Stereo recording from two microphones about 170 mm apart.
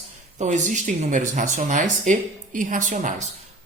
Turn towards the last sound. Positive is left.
turn(degrees=-45)  # may be behind; listen again after turning